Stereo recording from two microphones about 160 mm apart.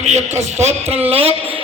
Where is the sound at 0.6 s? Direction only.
40° right (ahead or behind).